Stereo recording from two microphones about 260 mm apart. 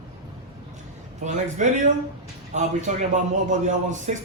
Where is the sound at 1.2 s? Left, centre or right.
Right.